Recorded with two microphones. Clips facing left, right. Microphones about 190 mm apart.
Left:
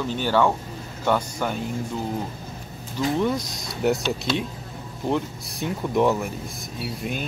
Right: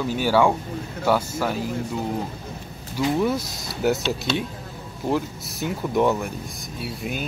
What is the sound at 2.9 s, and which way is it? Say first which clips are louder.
Speech: right 1 dB; 5° right (ahead or behind).